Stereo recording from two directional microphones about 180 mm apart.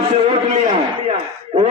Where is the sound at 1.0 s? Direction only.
35° right (ahead or behind).